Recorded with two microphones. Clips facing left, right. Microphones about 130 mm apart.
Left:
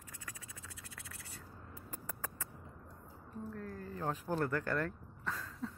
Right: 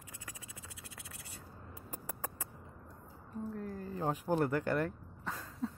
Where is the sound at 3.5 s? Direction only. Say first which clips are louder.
Right 3 dB; 20° right (ahead or behind).